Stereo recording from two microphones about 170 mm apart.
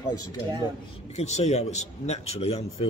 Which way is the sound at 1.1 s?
40° left (ahead or behind).